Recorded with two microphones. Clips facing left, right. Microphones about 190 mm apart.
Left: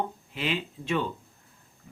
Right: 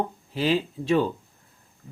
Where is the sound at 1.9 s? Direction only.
30° right (ahead or behind).